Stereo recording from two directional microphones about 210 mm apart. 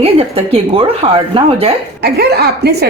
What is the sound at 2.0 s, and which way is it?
Speech, 50° right (ahead or behind).